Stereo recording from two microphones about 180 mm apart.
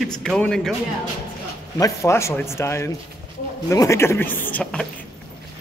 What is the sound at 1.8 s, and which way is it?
A man's voice, 15° left (ahead or behind).